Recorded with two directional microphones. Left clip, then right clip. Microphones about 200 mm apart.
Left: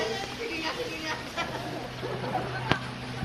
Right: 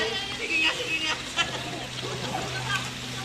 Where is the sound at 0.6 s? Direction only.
50° left (ahead or behind).